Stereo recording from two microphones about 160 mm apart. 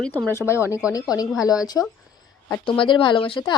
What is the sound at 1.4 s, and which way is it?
A woman's voice, 20° left (ahead or behind).